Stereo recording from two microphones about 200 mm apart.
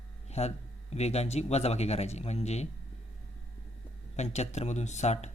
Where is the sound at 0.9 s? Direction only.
30° left (ahead or behind).